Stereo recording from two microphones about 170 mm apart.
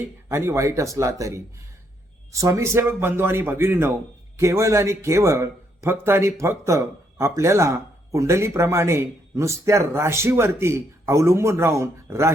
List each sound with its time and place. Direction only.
0.3 s a man's voice: 15° right (ahead or behind)